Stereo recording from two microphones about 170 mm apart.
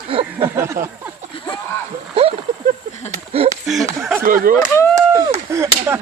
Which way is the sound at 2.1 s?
35° right (ahead or behind).